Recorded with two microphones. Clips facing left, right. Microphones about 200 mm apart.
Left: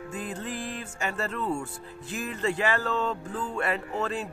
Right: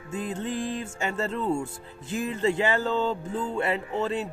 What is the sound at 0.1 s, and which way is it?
Speech, 25° right (ahead or behind).